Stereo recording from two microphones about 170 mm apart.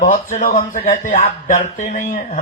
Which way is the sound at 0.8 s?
40° left (ahead or behind).